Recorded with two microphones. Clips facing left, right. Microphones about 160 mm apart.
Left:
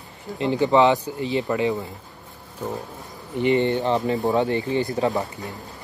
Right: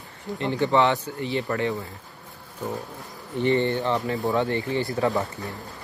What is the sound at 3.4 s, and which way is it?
Speech, 15° left (ahead or behind).